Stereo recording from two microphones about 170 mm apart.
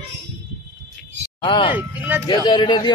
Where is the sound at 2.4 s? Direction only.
25° left (ahead or behind).